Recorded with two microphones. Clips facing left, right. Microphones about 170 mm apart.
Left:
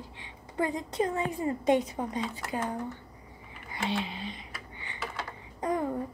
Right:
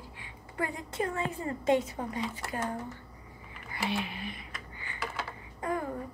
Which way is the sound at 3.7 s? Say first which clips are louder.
Left 1 dB; 20° left (ahead or behind).